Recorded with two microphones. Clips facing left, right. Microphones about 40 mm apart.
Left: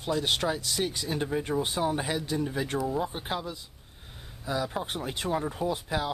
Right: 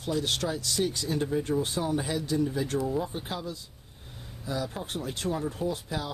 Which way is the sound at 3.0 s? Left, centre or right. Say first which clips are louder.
Left 2 dB; left.